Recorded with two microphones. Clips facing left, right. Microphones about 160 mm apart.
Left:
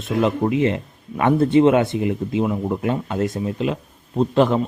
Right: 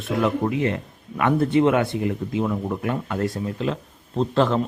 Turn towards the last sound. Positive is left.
turn(degrees=15)  # may be behind; listen again after turning